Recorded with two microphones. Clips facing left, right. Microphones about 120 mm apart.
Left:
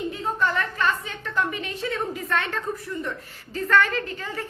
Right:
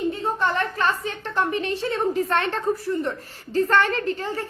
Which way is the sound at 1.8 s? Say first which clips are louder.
Right 3 dB; 35° right (ahead or behind).